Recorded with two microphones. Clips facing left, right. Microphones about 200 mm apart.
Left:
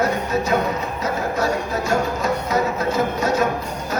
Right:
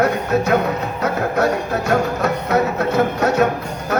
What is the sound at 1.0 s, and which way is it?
Music, 65° right (ahead or behind).